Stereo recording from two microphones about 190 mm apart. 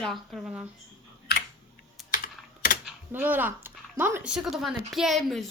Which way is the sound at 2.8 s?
10° right (ahead or behind).